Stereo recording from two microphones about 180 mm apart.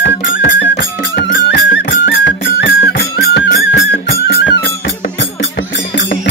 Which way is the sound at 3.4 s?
70° left (ahead or behind).